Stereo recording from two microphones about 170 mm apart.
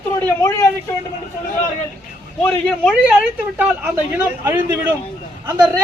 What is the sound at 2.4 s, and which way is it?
Speech, 5° left (ahead or behind).